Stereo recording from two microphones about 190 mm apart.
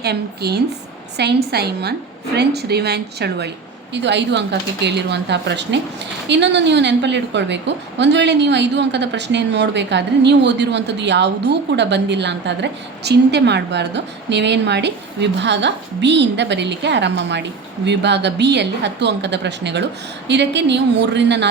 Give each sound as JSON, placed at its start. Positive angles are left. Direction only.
{"t": 0.0, "sound": "a woman's voice", "side_deg": -60}